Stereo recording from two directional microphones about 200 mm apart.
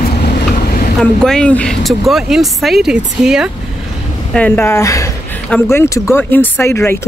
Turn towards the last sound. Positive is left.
turn(degrees=10)  # may be behind; listen again after turning